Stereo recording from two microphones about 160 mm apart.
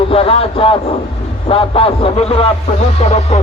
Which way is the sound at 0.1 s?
35° left (ahead or behind).